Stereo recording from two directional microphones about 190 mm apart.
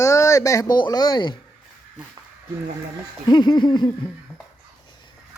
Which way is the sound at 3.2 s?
25° left (ahead or behind).